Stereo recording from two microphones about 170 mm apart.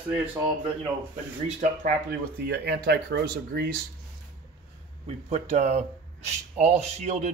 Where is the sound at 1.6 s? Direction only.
60° right (ahead or behind).